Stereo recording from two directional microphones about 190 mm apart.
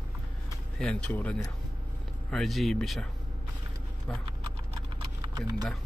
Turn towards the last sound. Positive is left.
turn(degrees=-20)  # may be behind; listen again after turning